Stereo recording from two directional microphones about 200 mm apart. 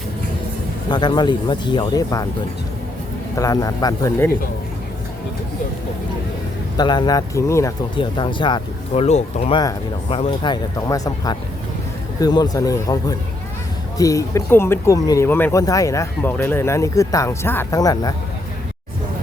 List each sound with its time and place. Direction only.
0.9 s speech: 20° left (ahead or behind)
3.3 s speech: 15° left (ahead or behind)
6.7 s speech: 20° left (ahead or behind)